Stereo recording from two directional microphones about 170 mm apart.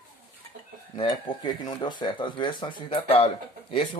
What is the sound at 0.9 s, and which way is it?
Speech, 25° left (ahead or behind).